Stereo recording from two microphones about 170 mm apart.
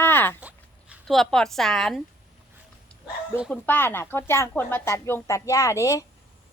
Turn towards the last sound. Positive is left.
turn(degrees=20)  # may be behind; listen again after turning